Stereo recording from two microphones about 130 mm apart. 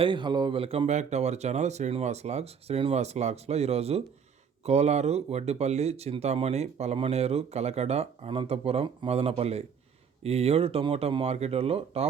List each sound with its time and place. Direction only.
0.0 s a man's voice: 35° right (ahead or behind)
0.9 s speech: 60° right (ahead or behind)